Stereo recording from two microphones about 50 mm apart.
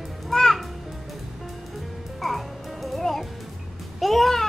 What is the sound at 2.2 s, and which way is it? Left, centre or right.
Music, centre.